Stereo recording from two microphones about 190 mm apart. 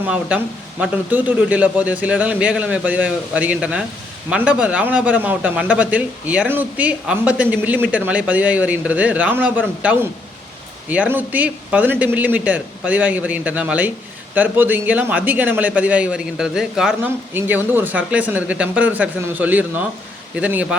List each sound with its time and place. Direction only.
0.0 s speech: 10° right (ahead or behind)